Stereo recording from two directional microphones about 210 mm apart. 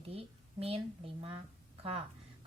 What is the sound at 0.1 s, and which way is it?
Speech, 25° right (ahead or behind).